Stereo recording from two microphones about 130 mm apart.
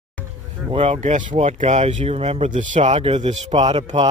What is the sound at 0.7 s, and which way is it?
Speech, 45° right (ahead or behind).